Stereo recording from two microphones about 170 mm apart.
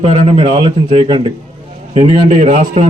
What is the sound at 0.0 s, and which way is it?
A man's voice, 35° right (ahead or behind).